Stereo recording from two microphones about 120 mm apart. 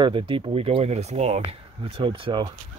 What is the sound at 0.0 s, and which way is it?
Speech, 45° right (ahead or behind).